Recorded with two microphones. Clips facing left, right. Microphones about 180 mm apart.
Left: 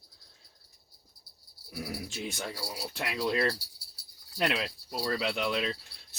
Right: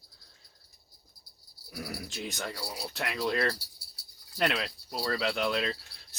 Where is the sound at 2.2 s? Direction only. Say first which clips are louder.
Right 2 dB; 5° left (ahead or behind).